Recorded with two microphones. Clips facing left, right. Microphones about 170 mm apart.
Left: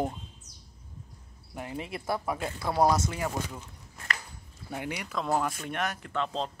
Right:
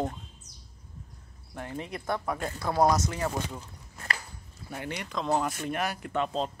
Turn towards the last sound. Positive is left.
turn(degrees=-5)  # may be behind; listen again after turning